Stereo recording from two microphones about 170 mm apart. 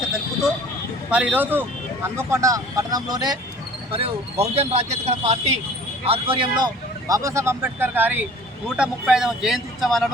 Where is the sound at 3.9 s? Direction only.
35° right (ahead or behind); by 10.0 s centre (ahead or behind).